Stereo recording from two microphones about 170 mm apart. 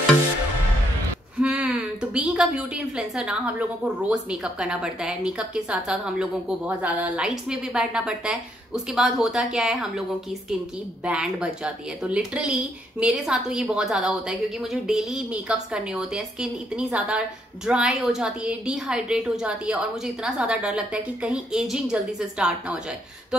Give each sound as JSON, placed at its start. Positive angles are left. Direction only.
{"t": 1.4, "sound": "a woman's voice", "side_deg": -5}
{"t": 11.1, "sound": "a woman's voice", "side_deg": -5}